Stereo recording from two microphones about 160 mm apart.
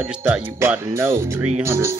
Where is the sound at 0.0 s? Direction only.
10° right (ahead or behind).